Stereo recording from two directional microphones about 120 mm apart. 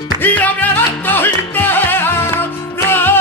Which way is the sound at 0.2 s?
15° left (ahead or behind).